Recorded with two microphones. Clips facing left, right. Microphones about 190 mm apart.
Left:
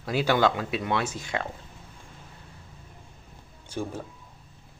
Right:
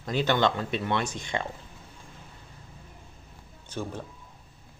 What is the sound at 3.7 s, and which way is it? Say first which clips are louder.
Speech: left 2 dB; 10° left (ahead or behind).